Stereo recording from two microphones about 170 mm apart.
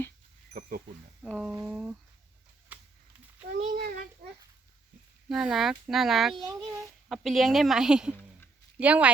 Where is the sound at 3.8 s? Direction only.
75° right (ahead or behind).